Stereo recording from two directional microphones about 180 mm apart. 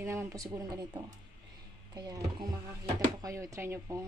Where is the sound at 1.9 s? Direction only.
25° right (ahead or behind).